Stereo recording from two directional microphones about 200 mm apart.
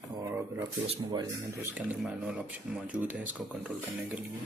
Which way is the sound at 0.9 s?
20° right (ahead or behind).